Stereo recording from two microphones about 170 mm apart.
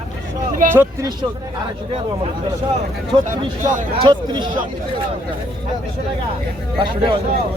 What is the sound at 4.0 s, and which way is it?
Speech, 25° right (ahead or behind).